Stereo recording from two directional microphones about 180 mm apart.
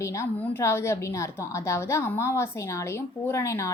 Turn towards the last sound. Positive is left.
turn(degrees=15)  # may be behind; listen again after turning